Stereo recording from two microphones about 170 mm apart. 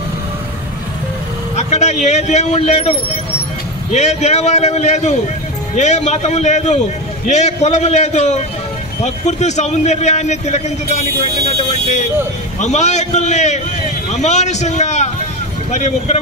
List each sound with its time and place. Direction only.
1.6 s a man's voice: 40° left (ahead or behind)
3.9 s a man's voice: 40° left (ahead or behind)